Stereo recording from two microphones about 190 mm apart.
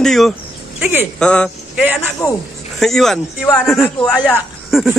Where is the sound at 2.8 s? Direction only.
Centre (ahead or behind).